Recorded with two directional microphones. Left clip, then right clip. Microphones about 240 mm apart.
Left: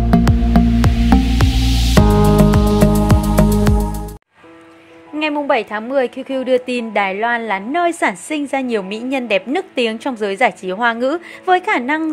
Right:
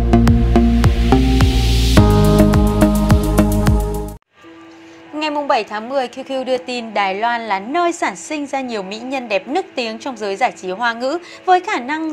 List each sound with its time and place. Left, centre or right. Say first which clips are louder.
0.1 s music: right 2 dB; centre
5.5 s a woman's voice: even; left